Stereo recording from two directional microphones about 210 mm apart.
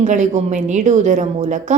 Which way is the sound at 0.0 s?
35° right (ahead or behind).